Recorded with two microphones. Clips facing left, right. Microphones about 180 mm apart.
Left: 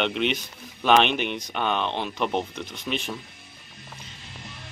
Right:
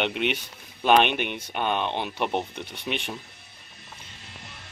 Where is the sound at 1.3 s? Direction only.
10° right (ahead or behind).